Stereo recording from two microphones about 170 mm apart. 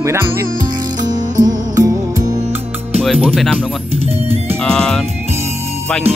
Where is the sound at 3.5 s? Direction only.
35° right (ahead or behind).